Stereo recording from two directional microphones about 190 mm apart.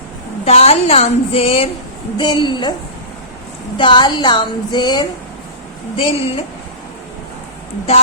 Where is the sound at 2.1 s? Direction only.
25° left (ahead or behind).